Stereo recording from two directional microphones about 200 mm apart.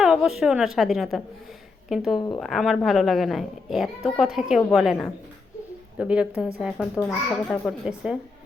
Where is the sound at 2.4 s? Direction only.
Centre (ahead or behind).